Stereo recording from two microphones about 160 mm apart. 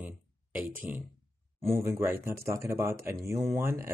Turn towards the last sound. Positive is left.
turn(degrees=-15)  # may be behind; listen again after turning